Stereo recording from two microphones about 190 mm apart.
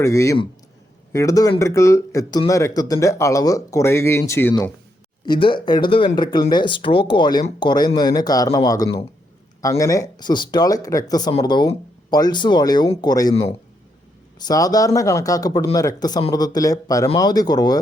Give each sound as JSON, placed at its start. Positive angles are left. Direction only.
{"t": 0.0, "sound": "speech", "side_deg": 15}
{"t": 5.2, "sound": "speech", "side_deg": 25}
{"t": 14.3, "sound": "speech", "side_deg": 20}